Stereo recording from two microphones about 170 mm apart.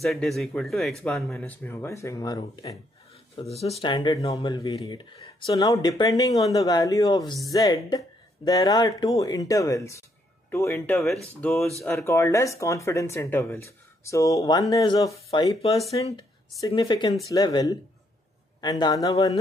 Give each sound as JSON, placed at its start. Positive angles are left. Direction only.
{"t": 0.0, "sound": "speech", "side_deg": 0}
{"t": 1.3, "sound": "speech", "side_deg": 15}
{"t": 3.6, "sound": "speech", "side_deg": 35}
{"t": 16.0, "sound": "speech", "side_deg": 35}
{"t": 16.7, "sound": "speech", "side_deg": 25}